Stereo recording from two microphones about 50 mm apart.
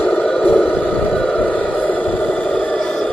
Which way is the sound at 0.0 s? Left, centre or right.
Centre.